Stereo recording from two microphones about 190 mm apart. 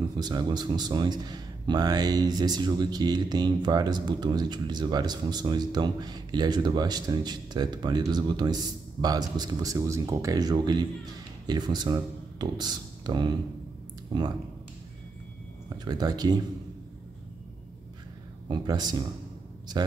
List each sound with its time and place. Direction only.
0.2 s a man's voice: 25° right (ahead or behind)
15.8 s a man's voice: 20° right (ahead or behind)
18.5 s a man's voice: 20° right (ahead or behind)